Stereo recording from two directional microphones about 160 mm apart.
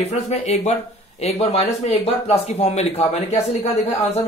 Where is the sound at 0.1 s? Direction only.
45° left (ahead or behind).